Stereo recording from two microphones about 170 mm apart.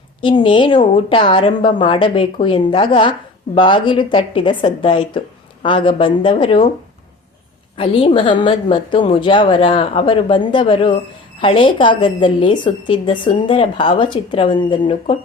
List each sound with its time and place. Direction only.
0.2 s a woman's voice: 30° left (ahead or behind)
7.8 s a woman's voice: 30° left (ahead or behind)